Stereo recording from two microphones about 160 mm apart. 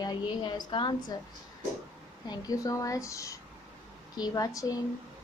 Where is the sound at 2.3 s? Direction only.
20° left (ahead or behind).